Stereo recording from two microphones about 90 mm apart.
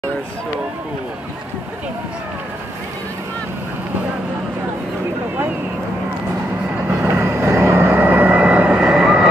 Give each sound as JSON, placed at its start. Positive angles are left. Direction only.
{"t": 7.0, "sound": "vehicle", "side_deg": -25}